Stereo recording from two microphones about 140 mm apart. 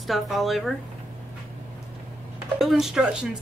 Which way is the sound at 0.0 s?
Centre (ahead or behind).